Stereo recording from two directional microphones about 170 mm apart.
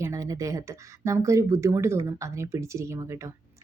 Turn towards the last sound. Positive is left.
turn(degrees=-20)  # may be behind; listen again after turning